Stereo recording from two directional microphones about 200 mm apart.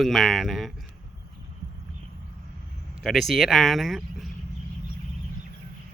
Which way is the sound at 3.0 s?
Centre (ahead or behind).